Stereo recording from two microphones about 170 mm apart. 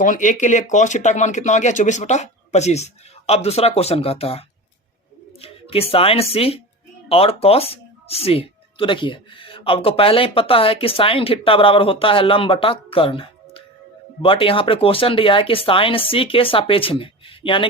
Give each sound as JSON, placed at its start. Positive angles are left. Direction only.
{"t": 0.0, "sound": "speech", "side_deg": 50}